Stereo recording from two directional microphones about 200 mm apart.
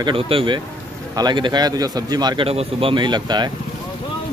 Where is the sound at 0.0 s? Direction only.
25° right (ahead or behind).